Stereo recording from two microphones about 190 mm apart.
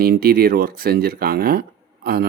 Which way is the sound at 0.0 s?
50° right (ahead or behind).